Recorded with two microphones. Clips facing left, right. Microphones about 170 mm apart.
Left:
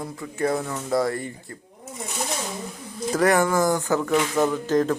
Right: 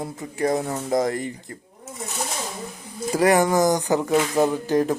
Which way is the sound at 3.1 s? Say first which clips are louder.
Right 2 dB; 15° right (ahead or behind).